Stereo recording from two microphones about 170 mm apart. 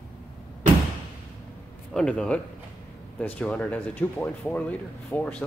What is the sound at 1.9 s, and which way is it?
Speech, 5° left (ahead or behind).